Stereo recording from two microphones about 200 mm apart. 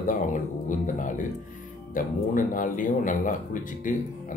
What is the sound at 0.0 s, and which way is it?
Music, 40° left (ahead or behind).